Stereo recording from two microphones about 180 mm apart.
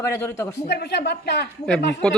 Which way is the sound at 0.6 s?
65° left (ahead or behind).